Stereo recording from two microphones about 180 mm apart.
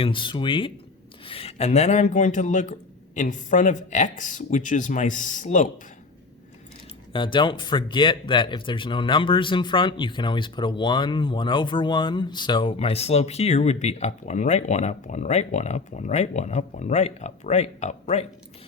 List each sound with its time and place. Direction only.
0.0 s speech: 25° left (ahead or behind); by 5.6 s 45° left (ahead or behind)
7.1 s speech: 25° left (ahead or behind)